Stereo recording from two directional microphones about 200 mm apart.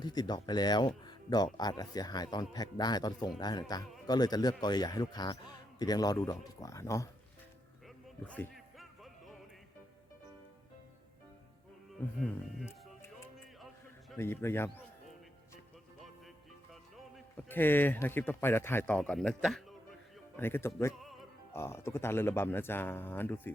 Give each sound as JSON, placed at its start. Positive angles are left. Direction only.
{"t": 0.0, "sound": "speech", "side_deg": 20}
{"t": 1.0, "sound": "a sound", "side_deg": 20}
{"t": 1.5, "sound": "speech", "side_deg": 20}
{"t": 8.3, "sound": "music", "side_deg": 5}
{"t": 12.2, "sound": "music", "side_deg": 10}
{"t": 14.2, "sound": "speech", "side_deg": 10}
{"t": 17.2, "sound": "speech", "side_deg": 10}
{"t": 20.3, "sound": "speech", "side_deg": 10}
{"t": 21.0, "sound": "music", "side_deg": 0}
{"t": 21.5, "sound": "speech", "side_deg": 10}